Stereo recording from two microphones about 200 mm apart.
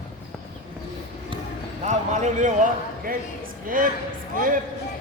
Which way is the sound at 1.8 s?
35° right (ahead or behind).